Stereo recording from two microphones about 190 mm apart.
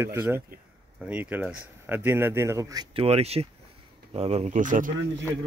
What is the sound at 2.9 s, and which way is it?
Speech, 30° right (ahead or behind).